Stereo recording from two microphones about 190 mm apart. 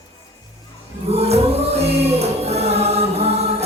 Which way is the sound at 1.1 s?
35° right (ahead or behind).